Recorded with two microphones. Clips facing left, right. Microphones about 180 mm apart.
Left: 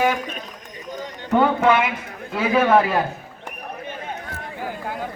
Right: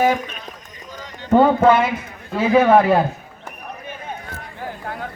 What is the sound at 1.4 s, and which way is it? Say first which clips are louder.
Speech: right 4 dB; 35° right (ahead or behind).